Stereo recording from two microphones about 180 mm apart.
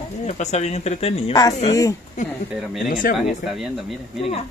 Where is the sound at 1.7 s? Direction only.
20° left (ahead or behind).